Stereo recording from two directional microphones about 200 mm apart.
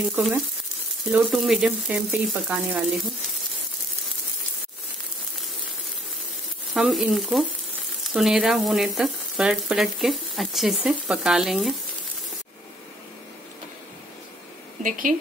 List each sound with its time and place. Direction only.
0.0 s frying: 5° right (ahead or behind)
6.7 s frying: centre (ahead or behind)
14.8 s a woman's voice: 40° right (ahead or behind)